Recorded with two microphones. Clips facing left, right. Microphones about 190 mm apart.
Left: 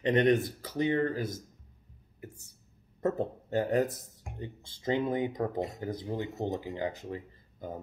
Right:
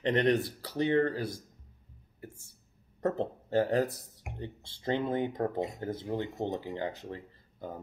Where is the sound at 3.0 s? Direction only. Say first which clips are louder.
Left 1 dB; 40° right (ahead or behind).